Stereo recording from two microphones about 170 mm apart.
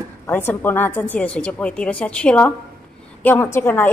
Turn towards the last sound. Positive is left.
turn(degrees=15)  # may be behind; listen again after turning